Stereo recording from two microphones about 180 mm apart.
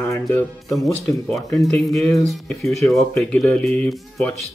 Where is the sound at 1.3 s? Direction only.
15° left (ahead or behind).